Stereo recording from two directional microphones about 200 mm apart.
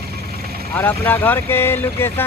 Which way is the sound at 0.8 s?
10° left (ahead or behind).